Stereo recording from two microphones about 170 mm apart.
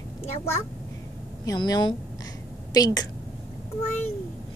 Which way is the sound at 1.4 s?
20° left (ahead or behind).